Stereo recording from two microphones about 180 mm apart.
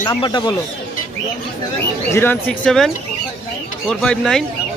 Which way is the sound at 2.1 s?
10° left (ahead or behind).